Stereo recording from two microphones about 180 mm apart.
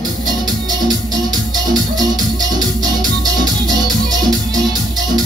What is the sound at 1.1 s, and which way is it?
Music, 20° right (ahead or behind).